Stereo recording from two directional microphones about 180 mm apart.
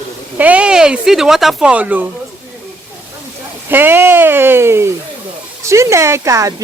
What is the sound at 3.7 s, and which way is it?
Speech, 10° right (ahead or behind).